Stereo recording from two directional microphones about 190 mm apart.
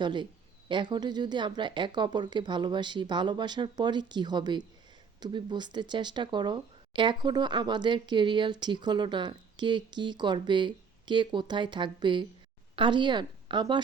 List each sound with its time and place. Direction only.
0.0 s speech: 25° right (ahead or behind)